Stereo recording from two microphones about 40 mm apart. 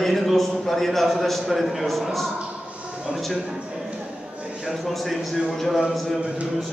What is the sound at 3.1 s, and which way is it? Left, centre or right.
Speech, centre.